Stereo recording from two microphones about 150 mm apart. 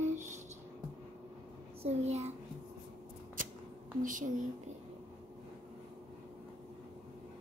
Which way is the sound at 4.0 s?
60° right (ahead or behind).